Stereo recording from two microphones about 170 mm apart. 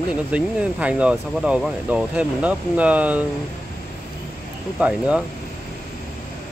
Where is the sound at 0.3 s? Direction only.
10° right (ahead or behind).